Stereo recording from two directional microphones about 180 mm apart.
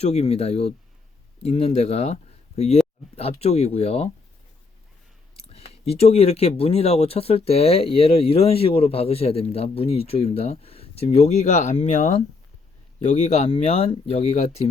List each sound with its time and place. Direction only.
0.0 s speech: 35° left (ahead or behind)
5.4 s speech: 35° left (ahead or behind)